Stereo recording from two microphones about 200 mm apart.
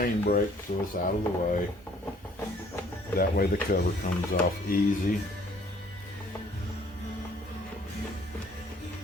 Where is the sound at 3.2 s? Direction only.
50° left (ahead or behind).